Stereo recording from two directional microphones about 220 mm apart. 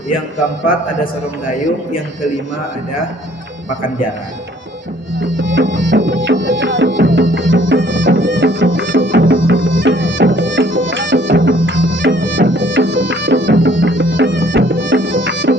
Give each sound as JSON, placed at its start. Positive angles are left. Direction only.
{"t": 5.2, "sound": "music", "side_deg": -55}